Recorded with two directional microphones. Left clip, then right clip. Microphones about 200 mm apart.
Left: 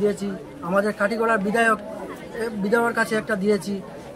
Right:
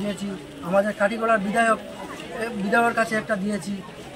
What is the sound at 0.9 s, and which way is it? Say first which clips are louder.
Speech: even; 25° left (ahead or behind).